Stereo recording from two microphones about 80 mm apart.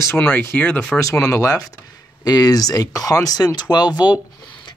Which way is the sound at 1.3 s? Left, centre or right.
Left.